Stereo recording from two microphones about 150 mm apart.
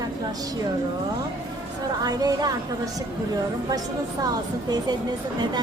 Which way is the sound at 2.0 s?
25° right (ahead or behind).